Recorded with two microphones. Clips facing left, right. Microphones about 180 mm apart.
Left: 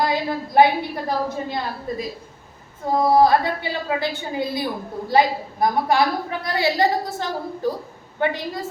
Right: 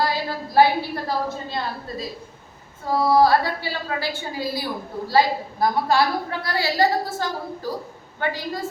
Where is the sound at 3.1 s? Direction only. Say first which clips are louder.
Even; 20° left (ahead or behind).